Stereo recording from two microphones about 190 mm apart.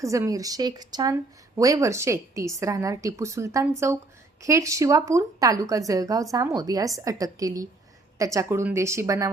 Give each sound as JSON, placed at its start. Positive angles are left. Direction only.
{"t": 0.0, "sound": "speech", "side_deg": -15}